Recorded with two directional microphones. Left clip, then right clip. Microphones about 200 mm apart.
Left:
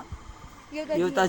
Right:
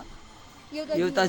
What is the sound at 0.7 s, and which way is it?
Speech, 60° right (ahead or behind).